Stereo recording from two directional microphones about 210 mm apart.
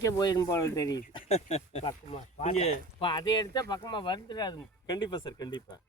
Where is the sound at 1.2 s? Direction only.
30° left (ahead or behind).